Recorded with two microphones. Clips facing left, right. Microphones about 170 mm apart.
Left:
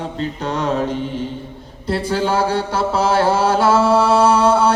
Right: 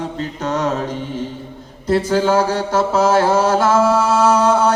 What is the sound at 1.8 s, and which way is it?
Mantra, 45° right (ahead or behind).